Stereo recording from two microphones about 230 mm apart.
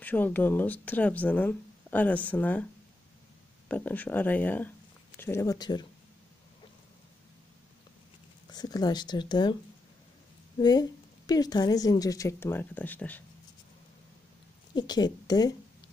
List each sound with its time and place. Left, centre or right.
0.0 s speech: centre
3.6 s speech: centre
8.5 s speech: centre
10.6 s speech: centre
14.8 s speech: centre